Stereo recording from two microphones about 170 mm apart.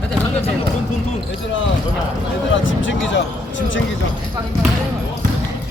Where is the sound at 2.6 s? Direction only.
90° left.